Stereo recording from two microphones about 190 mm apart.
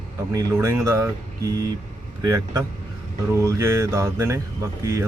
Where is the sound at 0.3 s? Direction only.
15° right (ahead or behind).